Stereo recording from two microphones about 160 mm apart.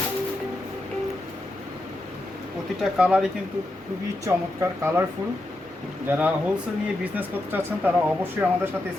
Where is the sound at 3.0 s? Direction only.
5° right (ahead or behind).